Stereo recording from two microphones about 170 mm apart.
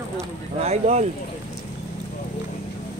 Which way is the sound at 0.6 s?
40° right (ahead or behind).